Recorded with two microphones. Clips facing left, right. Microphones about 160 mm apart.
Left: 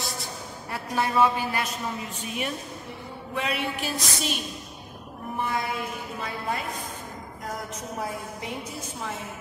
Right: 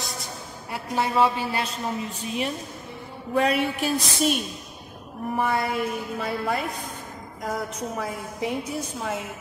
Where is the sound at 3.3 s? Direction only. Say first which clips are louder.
Right 7 dB; 45° right (ahead or behind).